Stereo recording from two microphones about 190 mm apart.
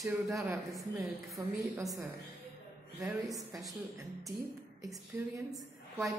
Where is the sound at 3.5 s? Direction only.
Centre (ahead or behind).